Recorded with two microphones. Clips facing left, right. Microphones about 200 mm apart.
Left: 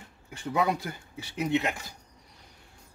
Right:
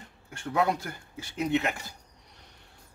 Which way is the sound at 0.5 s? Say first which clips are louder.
Even; 5° left (ahead or behind).